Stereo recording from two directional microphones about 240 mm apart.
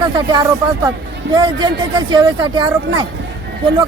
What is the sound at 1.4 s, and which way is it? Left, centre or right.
Speech, centre.